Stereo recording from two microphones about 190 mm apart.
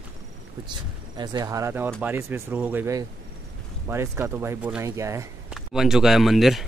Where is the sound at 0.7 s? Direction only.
20° right (ahead or behind).